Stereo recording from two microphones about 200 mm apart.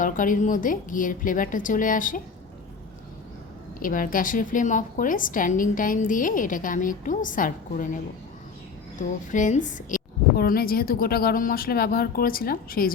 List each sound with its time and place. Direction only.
0.0 s a woman's voice: 40° left (ahead or behind)
3.8 s a woman's voice: 45° left (ahead or behind)
9.0 s a woman's voice: 40° left (ahead or behind)